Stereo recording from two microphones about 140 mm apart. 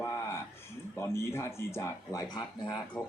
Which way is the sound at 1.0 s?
20° left (ahead or behind).